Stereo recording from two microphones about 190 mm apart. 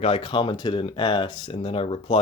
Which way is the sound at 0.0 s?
30° left (ahead or behind).